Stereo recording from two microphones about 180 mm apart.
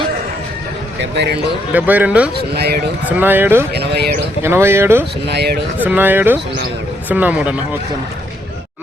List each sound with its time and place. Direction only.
1.1 s speech: 70° right (ahead or behind)
1.7 s speech: 10° right (ahead or behind)
2.5 s speech: 65° right (ahead or behind)
3.1 s speech: 10° right (ahead or behind)
3.7 s speech: 65° right (ahead or behind)
4.4 s speech: 15° right (ahead or behind)
5.2 s speech: 65° right (ahead or behind)
5.8 s speech: 10° right (ahead or behind)